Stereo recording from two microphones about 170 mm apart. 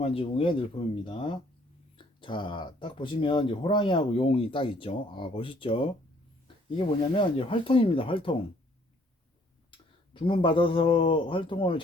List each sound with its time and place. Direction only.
0.0 s speech: 35° left (ahead or behind)
9.7 s speech: 30° left (ahead or behind)